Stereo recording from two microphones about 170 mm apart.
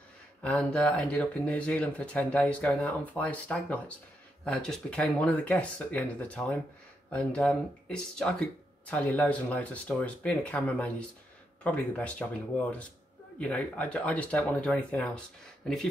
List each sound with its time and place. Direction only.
0.4 s speech: 5° left (ahead or behind)